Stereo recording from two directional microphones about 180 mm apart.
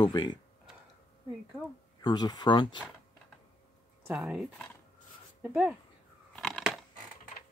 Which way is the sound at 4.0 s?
10° right (ahead or behind).